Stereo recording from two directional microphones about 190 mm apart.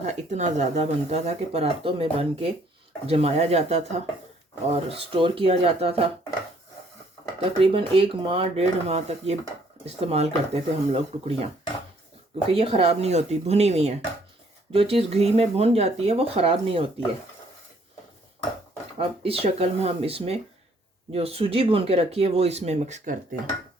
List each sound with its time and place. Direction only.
0.0 s speech: 35° right (ahead or behind)
7.6 s speech: 30° right (ahead or behind)
12.5 s speech: 30° right (ahead or behind)
18.9 s speech: 30° right (ahead or behind)